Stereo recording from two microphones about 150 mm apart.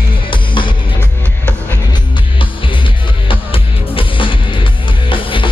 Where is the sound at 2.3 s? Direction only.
35° left (ahead or behind).